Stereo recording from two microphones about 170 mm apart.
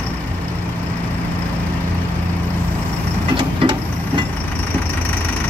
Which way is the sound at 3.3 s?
30° right (ahead or behind).